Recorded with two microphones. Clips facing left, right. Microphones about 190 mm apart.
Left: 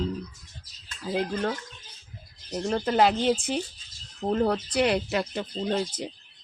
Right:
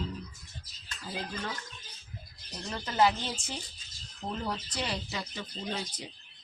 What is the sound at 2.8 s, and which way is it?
Speech, 60° left (ahead or behind).